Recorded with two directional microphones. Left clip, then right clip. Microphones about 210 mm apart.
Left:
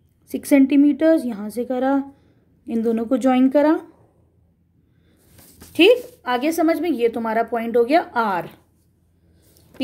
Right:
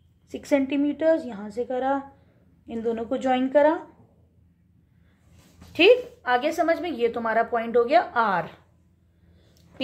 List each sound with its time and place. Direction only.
0.3 s a woman's voice: 40° left (ahead or behind)
5.7 s a woman's voice: 35° left (ahead or behind)